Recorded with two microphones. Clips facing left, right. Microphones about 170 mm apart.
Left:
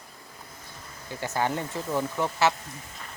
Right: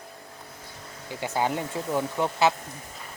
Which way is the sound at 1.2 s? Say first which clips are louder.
Right 1 dB; 15° right (ahead or behind).